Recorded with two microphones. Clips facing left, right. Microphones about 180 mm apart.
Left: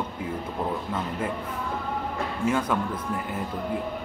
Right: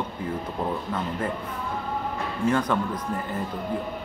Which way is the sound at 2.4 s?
5° left (ahead or behind).